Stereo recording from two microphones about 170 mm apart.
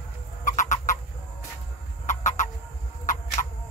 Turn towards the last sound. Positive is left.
turn(degrees=30)  # may be behind; listen again after turning